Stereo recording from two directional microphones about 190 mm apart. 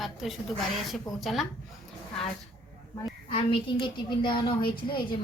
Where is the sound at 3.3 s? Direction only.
25° left (ahead or behind).